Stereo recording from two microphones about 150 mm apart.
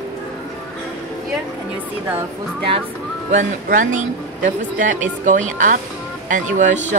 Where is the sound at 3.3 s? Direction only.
60° right (ahead or behind).